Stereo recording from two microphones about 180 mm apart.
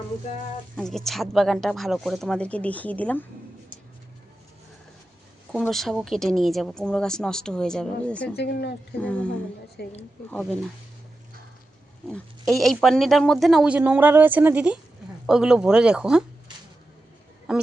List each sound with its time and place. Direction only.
0.8 s speech: centre (ahead or behind)
5.6 s speech: centre (ahead or behind)
8.4 s speech: 65° left (ahead or behind)
9.0 s speech: 5° left (ahead or behind)
9.8 s speech: 60° left (ahead or behind)
12.0 s speech: centre (ahead or behind)
17.5 s a man's voice: 5° right (ahead or behind)